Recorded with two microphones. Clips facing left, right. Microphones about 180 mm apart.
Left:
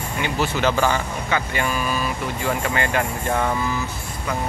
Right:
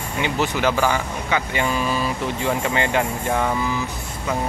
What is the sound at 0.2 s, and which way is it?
Speech, 20° right (ahead or behind).